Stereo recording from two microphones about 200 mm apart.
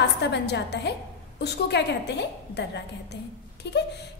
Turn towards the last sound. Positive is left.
turn(degrees=55)  # may be behind; listen again after turning